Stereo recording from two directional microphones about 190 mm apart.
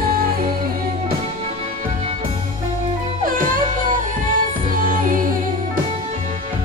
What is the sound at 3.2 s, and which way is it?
Music, 45° right (ahead or behind).